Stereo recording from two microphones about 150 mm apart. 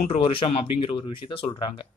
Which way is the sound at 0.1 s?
35° left (ahead or behind).